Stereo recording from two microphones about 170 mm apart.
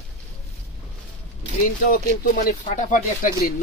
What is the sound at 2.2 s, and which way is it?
Speech, 60° left (ahead or behind).